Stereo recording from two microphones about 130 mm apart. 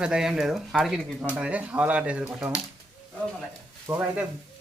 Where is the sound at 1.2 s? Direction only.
10° right (ahead or behind).